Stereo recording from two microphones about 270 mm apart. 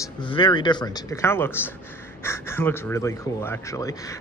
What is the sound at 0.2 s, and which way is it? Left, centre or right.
Speech, centre.